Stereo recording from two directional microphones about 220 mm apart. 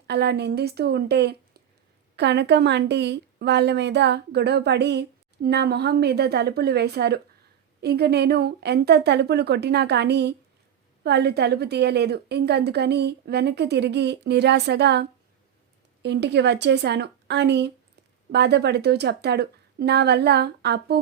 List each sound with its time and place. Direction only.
0.1 s a woman's voice: 50° right (ahead or behind)
16.0 s a woman's voice: 50° right (ahead or behind)